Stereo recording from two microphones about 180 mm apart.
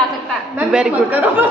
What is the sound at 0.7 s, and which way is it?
Speech, 5° right (ahead or behind).